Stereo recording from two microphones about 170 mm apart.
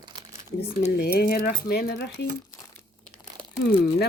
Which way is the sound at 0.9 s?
65° left (ahead or behind).